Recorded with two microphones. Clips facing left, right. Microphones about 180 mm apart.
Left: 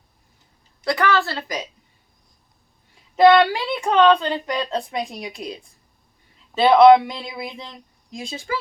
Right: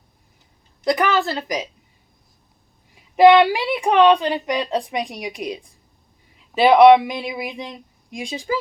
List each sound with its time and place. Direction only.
0.9 s speech: 20° right (ahead or behind)
2.9 s speech: 15° right (ahead or behind)